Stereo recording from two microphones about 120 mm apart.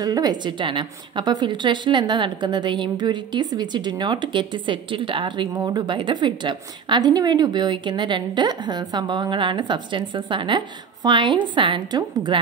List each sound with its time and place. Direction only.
0.0 s a woman's voice: 35° right (ahead or behind)